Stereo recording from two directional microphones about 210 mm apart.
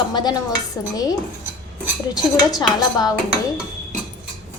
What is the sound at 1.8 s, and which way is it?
Dishes, centre (ahead or behind).